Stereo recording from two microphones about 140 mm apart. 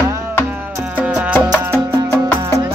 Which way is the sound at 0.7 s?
10° right (ahead or behind).